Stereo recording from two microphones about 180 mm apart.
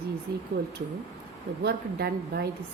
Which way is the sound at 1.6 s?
60° right (ahead or behind).